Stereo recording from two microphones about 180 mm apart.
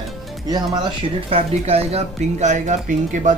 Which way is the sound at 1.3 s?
35° right (ahead or behind).